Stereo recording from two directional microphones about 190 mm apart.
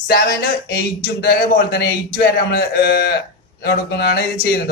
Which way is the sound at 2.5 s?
55° left (ahead or behind).